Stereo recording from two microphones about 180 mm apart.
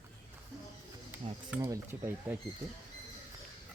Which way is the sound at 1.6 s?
15° right (ahead or behind).